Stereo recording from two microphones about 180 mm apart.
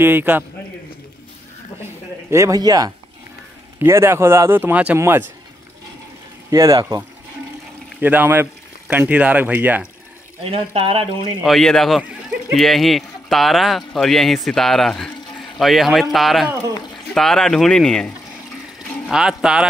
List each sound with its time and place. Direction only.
0.0 s speech: 10° right (ahead or behind)
2.3 s speech: 20° right (ahead or behind)
6.5 s speech: 20° right (ahead or behind)
10.4 s speech: 35° right (ahead or behind)
11.4 s speech: centre (ahead or behind)